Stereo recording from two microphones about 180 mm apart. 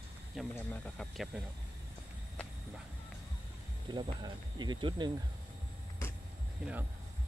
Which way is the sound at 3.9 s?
25° right (ahead or behind).